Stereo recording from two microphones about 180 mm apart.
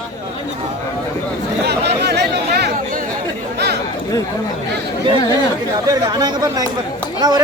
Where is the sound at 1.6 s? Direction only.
70° right (ahead or behind).